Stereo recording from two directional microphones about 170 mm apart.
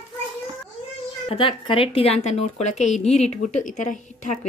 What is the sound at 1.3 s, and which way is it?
A woman's voice, 30° left (ahead or behind).